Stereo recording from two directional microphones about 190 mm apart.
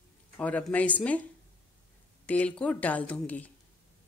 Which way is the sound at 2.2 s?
5° left (ahead or behind).